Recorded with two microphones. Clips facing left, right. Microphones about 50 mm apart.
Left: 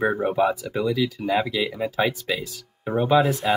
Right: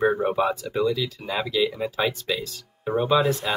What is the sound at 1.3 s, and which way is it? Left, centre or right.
Speech, left.